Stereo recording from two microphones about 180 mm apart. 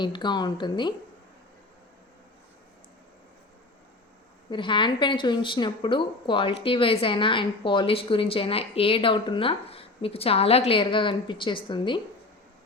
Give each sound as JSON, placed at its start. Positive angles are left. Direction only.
{"t": 0.0, "sound": "a woman's voice", "side_deg": 25}
{"t": 4.4, "sound": "a woman's voice", "side_deg": 25}